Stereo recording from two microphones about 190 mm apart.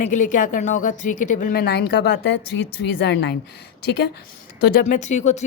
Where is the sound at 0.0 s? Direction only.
40° left (ahead or behind); by 4.2 s 60° left (ahead or behind).